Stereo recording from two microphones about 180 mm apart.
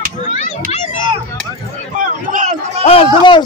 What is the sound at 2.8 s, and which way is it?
Speech, 30° left (ahead or behind).